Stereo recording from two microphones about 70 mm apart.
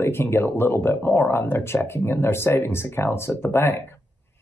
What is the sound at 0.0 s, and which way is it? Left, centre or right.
Speech, left.